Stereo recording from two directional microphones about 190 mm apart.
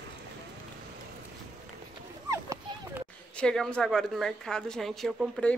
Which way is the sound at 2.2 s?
15° right (ahead or behind).